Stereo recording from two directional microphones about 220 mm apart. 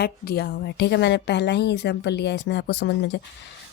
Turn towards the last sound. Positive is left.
turn(degrees=50)  # may be behind; listen again after turning